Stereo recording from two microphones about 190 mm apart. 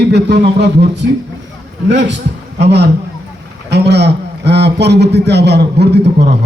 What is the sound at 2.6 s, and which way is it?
A man's voice, 65° right (ahead or behind).